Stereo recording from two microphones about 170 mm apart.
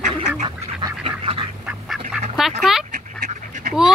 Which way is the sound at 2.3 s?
Centre (ahead or behind).